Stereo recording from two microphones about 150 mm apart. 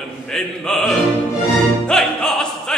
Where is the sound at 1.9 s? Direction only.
5° left (ahead or behind).